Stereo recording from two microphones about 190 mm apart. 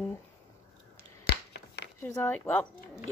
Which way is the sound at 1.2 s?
60° left (ahead or behind).